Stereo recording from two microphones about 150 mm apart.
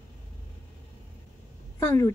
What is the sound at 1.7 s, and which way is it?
Speech, 15° left (ahead or behind).